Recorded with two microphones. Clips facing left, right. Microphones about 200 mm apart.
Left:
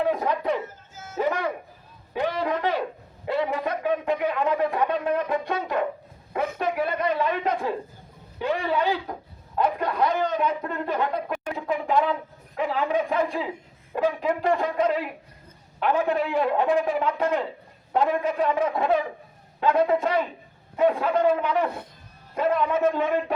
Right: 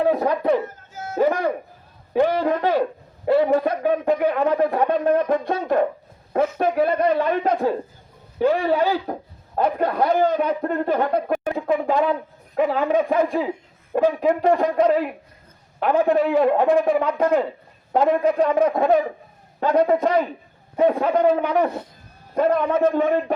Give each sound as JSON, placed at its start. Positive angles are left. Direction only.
{"t": 0.0, "sound": "speech", "side_deg": -45}
{"t": 3.2, "sound": "a man's voice", "side_deg": -45}
{"t": 6.8, "sound": "a man's voice", "side_deg": -45}